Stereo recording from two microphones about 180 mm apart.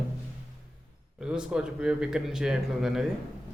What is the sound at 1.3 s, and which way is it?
Speech, 5° right (ahead or behind).